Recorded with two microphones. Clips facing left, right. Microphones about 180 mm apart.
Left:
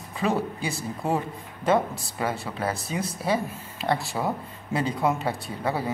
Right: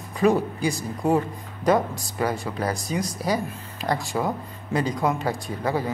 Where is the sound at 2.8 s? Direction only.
35° right (ahead or behind).